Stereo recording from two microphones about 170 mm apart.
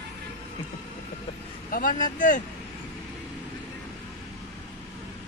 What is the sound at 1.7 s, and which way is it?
Speech, 50° left (ahead or behind).